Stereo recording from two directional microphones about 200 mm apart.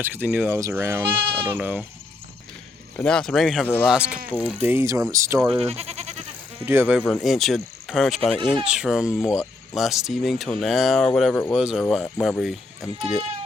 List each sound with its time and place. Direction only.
0.0 s speech: 10° right (ahead or behind)
1.0 s speech: 25° right (ahead or behind)
2.9 s speech: 5° left (ahead or behind)
3.8 s speech: 5° right (ahead or behind)
5.5 s goat: 30° right (ahead or behind)
6.7 s speech: 10° right (ahead or behind)
7.0 s speech: centre (ahead or behind)
8.4 s speech: 25° right (ahead or behind)
8.6 s speech: 5° right (ahead or behind)